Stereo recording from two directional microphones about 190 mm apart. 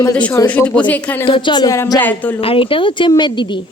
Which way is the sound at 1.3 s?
25° left (ahead or behind).